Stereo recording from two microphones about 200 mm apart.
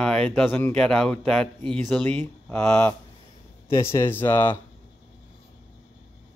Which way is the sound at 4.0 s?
10° left (ahead or behind).